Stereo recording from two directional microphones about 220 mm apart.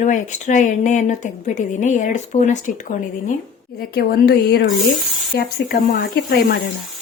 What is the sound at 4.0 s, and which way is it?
Speech, 45° left (ahead or behind).